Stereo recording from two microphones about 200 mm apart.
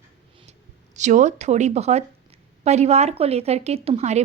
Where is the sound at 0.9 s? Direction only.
35° right (ahead or behind).